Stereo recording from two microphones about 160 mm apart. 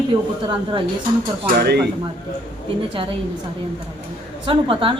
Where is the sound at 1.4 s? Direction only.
90° right.